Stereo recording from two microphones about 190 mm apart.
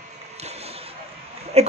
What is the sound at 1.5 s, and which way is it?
Speech, 35° right (ahead or behind).